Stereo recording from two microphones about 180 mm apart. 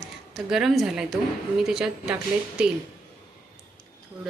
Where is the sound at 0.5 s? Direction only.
Centre (ahead or behind).